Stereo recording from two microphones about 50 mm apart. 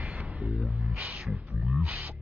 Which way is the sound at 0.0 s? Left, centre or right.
Right.